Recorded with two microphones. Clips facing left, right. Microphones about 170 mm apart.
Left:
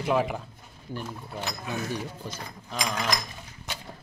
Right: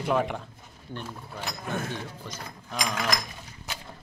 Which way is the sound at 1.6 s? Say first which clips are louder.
Right 3 dB; 50° right (ahead or behind).